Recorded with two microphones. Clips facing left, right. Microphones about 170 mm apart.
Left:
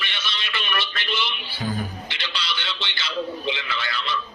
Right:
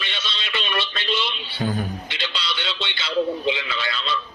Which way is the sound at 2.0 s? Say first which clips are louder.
Right 2 dB; 25° right (ahead or behind).